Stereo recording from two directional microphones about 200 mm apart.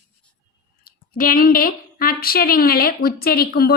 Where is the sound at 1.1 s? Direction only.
45° left (ahead or behind).